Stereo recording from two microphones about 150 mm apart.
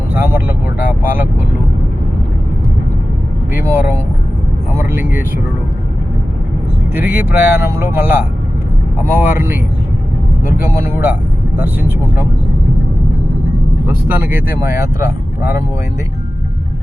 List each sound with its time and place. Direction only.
0.1 s speech: 10° right (ahead or behind)
3.5 s speech: 15° right (ahead or behind)
6.9 s speech: 10° right (ahead or behind)
10.7 s speech: 15° right (ahead or behind)
13.8 s speech: 15° right (ahead or behind)